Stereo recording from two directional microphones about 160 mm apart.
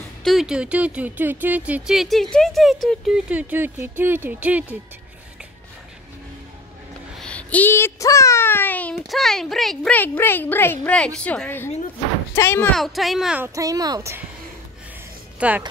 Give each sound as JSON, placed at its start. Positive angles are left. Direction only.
{"t": 0.2, "sound": "speech", "side_deg": 0}
{"t": 7.2, "sound": "a child's voice", "side_deg": 5}
{"t": 12.7, "sound": "speech", "side_deg": 0}
{"t": 13.6, "sound": "speech", "side_deg": -20}
{"t": 15.3, "sound": "music", "side_deg": -10}